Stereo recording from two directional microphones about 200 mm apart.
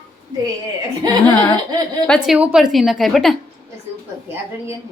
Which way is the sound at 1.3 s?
10° left (ahead or behind).